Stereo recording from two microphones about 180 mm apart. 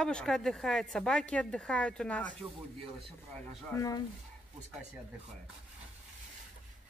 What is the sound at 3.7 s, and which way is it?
Speech, 20° left (ahead or behind).